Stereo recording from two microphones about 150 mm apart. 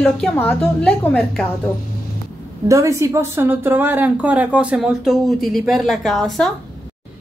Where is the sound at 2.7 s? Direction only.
20° right (ahead or behind); by 6.5 s centre (ahead or behind).